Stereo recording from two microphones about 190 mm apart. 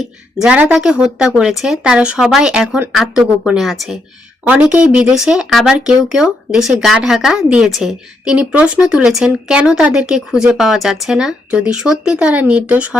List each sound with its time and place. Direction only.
0.0 s speech: 5° right (ahead or behind)